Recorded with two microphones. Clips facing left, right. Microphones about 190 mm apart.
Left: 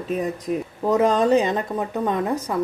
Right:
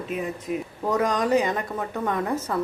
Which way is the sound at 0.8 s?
25° left (ahead or behind).